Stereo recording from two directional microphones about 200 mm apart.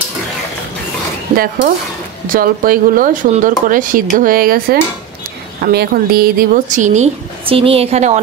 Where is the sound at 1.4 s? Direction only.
45° right (ahead or behind).